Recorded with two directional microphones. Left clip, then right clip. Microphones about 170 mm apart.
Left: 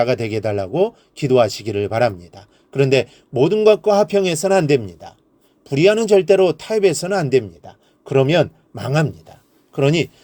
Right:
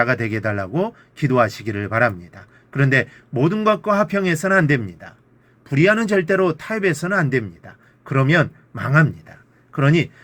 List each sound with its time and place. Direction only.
0.0 s speech: 30° left (ahead or behind)